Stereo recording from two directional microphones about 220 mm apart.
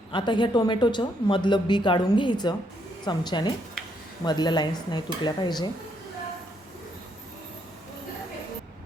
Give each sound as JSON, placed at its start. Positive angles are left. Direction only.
{"t": 0.1, "sound": "speech", "side_deg": 20}